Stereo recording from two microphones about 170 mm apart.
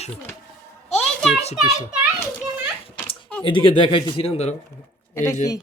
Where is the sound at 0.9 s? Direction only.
Centre (ahead or behind).